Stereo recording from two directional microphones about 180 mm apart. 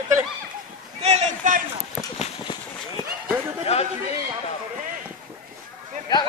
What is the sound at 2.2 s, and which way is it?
Run, 25° left (ahead or behind).